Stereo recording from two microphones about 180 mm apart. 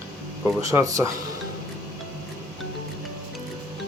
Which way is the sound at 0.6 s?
15° right (ahead or behind).